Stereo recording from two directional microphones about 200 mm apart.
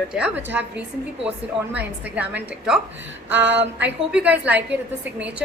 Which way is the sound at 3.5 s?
60° right (ahead or behind).